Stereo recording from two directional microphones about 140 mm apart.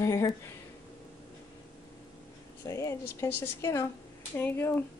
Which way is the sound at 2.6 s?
20° left (ahead or behind).